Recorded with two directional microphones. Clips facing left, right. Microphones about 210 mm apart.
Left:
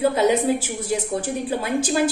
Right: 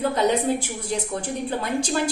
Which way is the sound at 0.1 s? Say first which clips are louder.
Left 2 dB; 5° left (ahead or behind).